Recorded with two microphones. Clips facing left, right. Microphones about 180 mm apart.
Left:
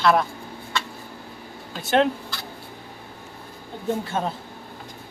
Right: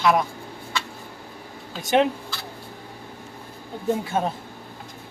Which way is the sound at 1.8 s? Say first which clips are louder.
Even; 15° right (ahead or behind).